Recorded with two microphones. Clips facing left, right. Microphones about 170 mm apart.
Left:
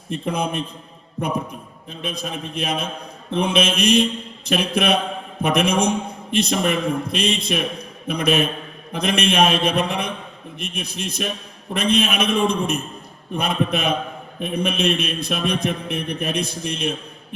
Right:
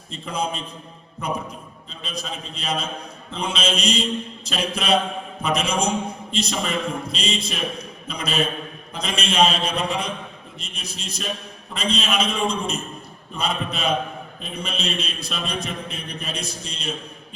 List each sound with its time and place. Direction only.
0.1 s a man's voice: 55° left (ahead or behind)
1.9 s a man's voice: 55° left (ahead or behind)